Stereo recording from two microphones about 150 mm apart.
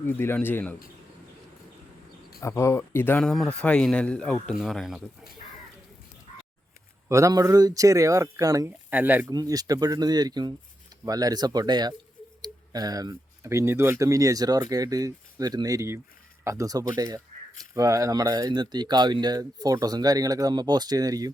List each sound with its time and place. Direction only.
0.0 s speech: 15° left (ahead or behind)
2.4 s speech: 20° left (ahead or behind)
3.2 s a man's voice: centre (ahead or behind)
7.1 s speech: 20° right (ahead or behind)
8.9 s speech: 10° right (ahead or behind)
9.3 s speech: 25° right (ahead or behind)